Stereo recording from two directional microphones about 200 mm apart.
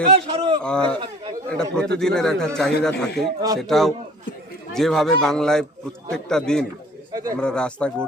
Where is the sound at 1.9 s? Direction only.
5° left (ahead or behind).